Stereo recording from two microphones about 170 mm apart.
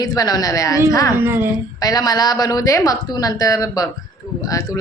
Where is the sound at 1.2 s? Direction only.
15° right (ahead or behind).